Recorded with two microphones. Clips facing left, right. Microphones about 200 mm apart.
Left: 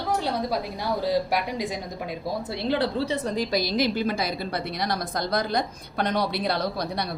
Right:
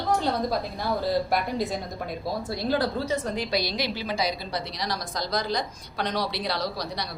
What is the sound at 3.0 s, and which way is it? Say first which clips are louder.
A woman's voice: left 2 dB; 35° left (ahead or behind).